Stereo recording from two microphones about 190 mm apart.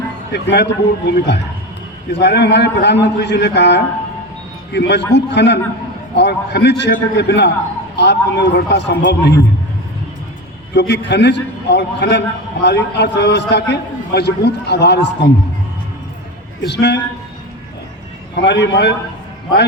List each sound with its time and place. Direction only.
0.3 s a man's voice: 65° left (ahead or behind)
10.8 s a man's voice: 65° left (ahead or behind)
16.6 s a man's voice: 65° left (ahead or behind)
18.3 s a man's voice: 65° left (ahead or behind)